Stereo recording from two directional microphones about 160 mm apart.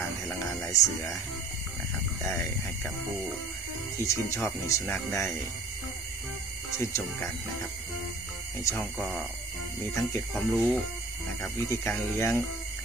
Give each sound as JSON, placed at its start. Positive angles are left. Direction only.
{"t": 0.4, "sound": "speech", "side_deg": 20}
{"t": 4.0, "sound": "speech", "side_deg": 20}
{"t": 6.8, "sound": "speech", "side_deg": 15}
{"t": 8.7, "sound": "speech", "side_deg": 5}
{"t": 11.7, "sound": "speech", "side_deg": 15}